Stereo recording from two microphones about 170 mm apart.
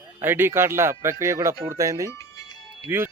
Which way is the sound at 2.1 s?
20° left (ahead or behind).